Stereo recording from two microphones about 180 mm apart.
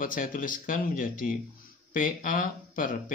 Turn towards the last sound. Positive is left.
turn(degrees=50)  # may be behind; listen again after turning